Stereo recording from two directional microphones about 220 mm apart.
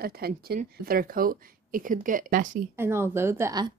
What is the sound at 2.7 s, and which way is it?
Speech, 10° right (ahead or behind).